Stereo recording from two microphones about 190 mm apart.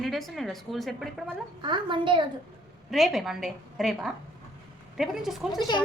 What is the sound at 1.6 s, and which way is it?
Speech, 25° right (ahead or behind).